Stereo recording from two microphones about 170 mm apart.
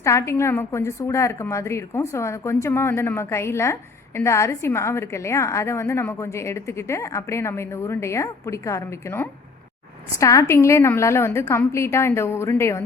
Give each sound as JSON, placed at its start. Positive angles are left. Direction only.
{"t": 0.0, "sound": "a woman's voice", "side_deg": 15}